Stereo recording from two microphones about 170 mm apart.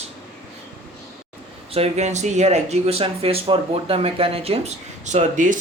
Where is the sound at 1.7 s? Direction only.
40° right (ahead or behind).